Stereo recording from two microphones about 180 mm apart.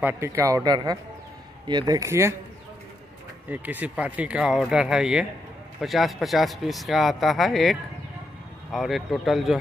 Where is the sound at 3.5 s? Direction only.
10° right (ahead or behind).